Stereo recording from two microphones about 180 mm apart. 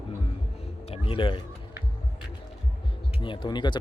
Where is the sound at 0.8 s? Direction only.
30° left (ahead or behind).